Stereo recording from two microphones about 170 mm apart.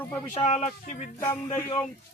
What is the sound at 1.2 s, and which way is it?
Speech, 20° left (ahead or behind).